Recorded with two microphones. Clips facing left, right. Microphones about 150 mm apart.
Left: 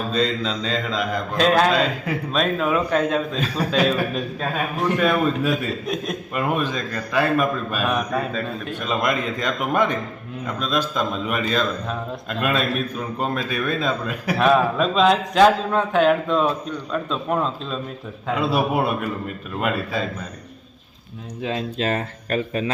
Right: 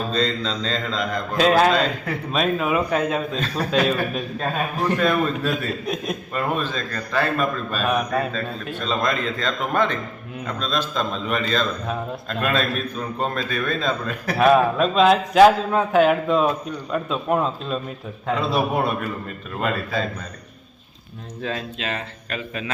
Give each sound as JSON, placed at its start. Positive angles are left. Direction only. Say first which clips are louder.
{"t": 0.1, "sound": "a man's voice", "louder": "left 4 dB", "side_deg": 5}
{"t": 6.3, "sound": "a man's voice", "louder": "left 2 dB", "side_deg": 15}
{"t": 7.9, "sound": "a man's voice", "louder": "right 2 dB", "side_deg": 0}
{"t": 8.8, "sound": "a man's voice", "louder": "even", "side_deg": 15}
{"t": 14.3, "sound": "a man's voice", "louder": "right 2 dB", "side_deg": -5}
{"t": 18.3, "sound": "a man's voice", "louder": "left 2 dB", "side_deg": 10}
{"t": 21.8, "sound": "speech", "louder": "left 6 dB", "side_deg": 40}